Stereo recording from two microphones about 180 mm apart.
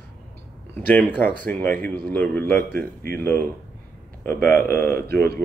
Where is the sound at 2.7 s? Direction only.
55° right (ahead or behind).